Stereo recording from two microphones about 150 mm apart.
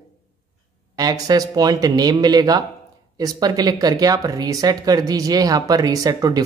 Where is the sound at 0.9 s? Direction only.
25° right (ahead or behind).